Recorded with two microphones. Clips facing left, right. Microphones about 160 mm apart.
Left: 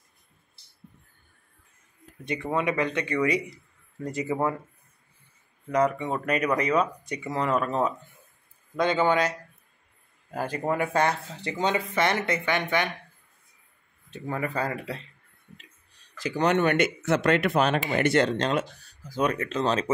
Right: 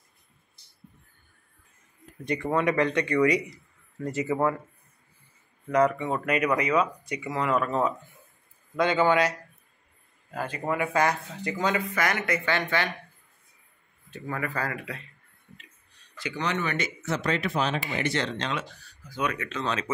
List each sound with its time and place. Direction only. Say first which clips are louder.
2.2 s speech: right 2 dB; 20° left (ahead or behind)
5.8 s speech: right 1 dB; 15° left (ahead or behind)
6.2 s speech: even; 35° left (ahead or behind)
10.3 s speech: left 2 dB; 40° left (ahead or behind)
12.4 s speech: left 1 dB; 15° left (ahead or behind)
14.1 s speech: left 2 dB; 25° left (ahead or behind)
16.2 s speech: left 7 dB; 45° left (ahead or behind)